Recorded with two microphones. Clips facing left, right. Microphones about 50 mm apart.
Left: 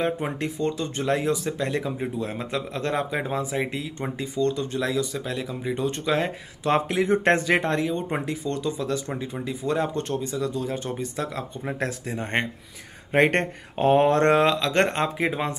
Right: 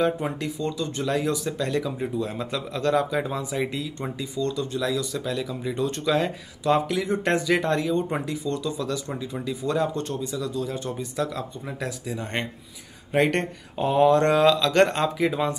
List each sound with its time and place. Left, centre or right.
0.0 s speech: left
0.6 s speech: left
7.7 s speech: left